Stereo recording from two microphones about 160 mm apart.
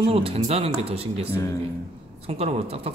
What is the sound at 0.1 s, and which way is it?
Speech, 40° right (ahead or behind).